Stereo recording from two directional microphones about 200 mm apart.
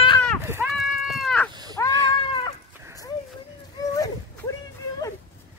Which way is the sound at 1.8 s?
15° left (ahead or behind).